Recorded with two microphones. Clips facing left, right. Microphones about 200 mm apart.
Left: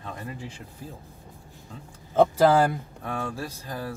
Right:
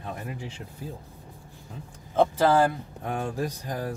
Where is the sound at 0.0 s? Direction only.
15° right (ahead or behind).